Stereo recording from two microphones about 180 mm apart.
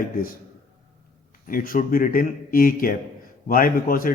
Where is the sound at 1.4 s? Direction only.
50° left (ahead or behind).